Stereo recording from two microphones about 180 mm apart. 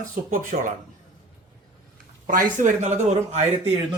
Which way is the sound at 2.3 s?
45° right (ahead or behind).